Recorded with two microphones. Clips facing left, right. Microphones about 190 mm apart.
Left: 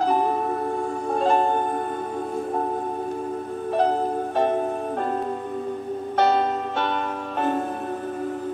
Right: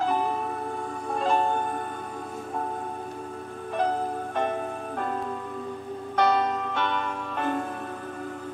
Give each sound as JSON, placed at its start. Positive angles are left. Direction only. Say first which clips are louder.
{"t": 0.0, "sound": "music", "louder": "left 5 dB", "side_deg": 40}
{"t": 6.1, "sound": "music", "louder": "left 3 dB", "side_deg": 25}